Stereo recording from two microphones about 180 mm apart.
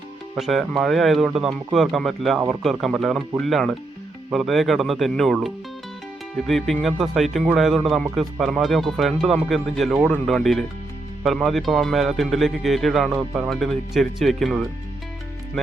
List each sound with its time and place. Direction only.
0.3 s speech: centre (ahead or behind)